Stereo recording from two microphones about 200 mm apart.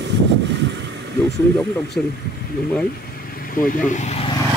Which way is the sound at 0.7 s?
60° right (ahead or behind).